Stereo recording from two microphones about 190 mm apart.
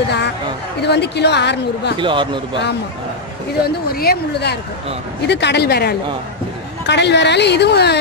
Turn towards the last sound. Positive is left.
turn(degrees=60)  # may be behind; listen again after turning